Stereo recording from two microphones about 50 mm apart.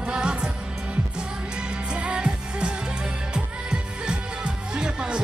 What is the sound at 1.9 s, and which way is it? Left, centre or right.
Music, centre.